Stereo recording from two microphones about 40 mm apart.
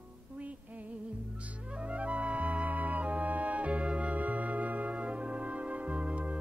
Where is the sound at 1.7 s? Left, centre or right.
Right.